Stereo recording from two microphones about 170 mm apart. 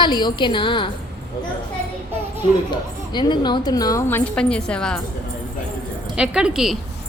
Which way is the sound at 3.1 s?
25° left (ahead or behind).